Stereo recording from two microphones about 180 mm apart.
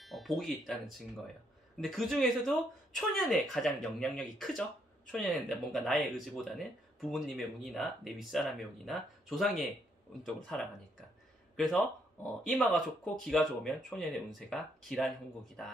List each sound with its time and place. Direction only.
0.0 s speech: centre (ahead or behind)